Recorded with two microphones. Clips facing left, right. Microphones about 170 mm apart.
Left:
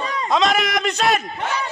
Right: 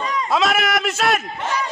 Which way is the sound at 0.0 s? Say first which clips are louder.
Right 1 dB; 30° left (ahead or behind).